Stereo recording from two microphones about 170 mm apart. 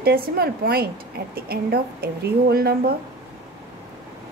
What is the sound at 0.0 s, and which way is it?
A woman's voice, 65° right (ahead or behind).